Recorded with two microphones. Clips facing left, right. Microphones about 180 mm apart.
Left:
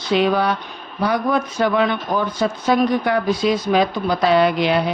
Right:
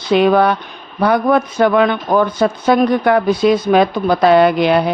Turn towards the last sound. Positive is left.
turn(degrees=-55)  # may be behind; listen again after turning